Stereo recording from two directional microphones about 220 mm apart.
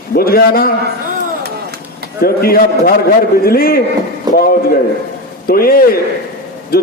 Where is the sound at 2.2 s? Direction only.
45° left (ahead or behind).